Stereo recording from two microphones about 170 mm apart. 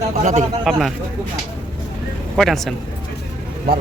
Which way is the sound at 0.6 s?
Centre (ahead or behind).